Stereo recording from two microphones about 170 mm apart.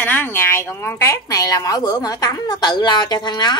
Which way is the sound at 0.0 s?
10° left (ahead or behind).